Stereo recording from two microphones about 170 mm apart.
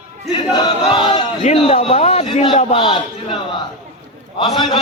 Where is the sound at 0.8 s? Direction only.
30° left (ahead or behind).